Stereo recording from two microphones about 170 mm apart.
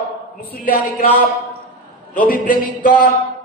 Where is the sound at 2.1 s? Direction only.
55° left (ahead or behind).